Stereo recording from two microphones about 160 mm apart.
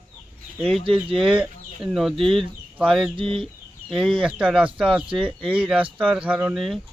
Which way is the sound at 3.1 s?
35° right (ahead or behind).